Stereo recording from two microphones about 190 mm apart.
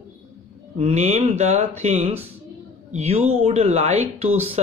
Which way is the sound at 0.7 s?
35° right (ahead or behind).